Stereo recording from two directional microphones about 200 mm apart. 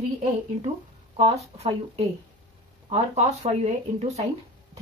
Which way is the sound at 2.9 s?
35° right (ahead or behind).